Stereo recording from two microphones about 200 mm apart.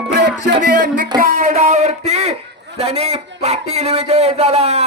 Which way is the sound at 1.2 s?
45° right (ahead or behind).